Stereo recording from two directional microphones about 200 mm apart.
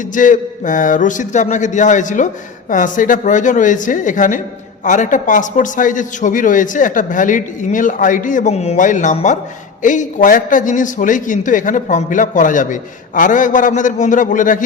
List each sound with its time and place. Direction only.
0.1 s a man's voice: 40° left (ahead or behind)